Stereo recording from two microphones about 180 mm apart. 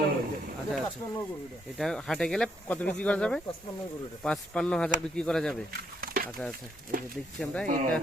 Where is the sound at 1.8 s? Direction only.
Centre (ahead or behind).